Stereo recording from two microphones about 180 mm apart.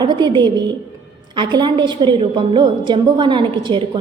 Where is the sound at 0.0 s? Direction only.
25° right (ahead or behind).